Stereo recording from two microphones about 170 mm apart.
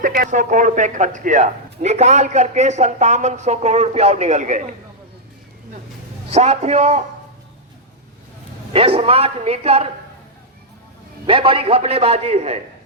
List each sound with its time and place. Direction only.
0.0 s a man's voice: 55° right (ahead or behind)
6.3 s a man's voice: 40° right (ahead or behind)
8.7 s a man's voice: 35° right (ahead or behind)
11.3 s a man's voice: 30° right (ahead or behind)